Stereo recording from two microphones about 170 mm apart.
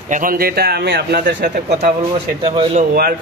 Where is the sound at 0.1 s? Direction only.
55° right (ahead or behind); by 1.9 s 75° right (ahead or behind).